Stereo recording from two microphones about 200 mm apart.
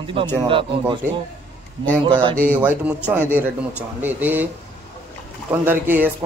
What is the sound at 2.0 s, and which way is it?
Speech, 25° right (ahead or behind).